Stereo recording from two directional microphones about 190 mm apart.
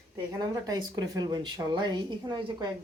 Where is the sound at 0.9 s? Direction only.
20° right (ahead or behind).